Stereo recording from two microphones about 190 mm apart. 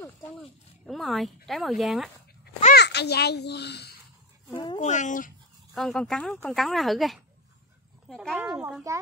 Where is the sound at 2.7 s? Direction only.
60° left (ahead or behind).